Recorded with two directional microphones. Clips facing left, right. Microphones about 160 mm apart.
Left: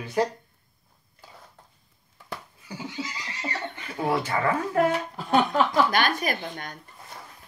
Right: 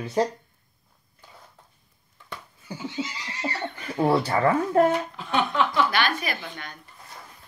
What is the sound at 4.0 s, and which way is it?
Speech, 35° right (ahead or behind).